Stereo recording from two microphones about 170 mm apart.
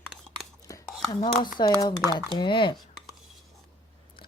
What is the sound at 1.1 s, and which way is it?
Speech, 20° left (ahead or behind).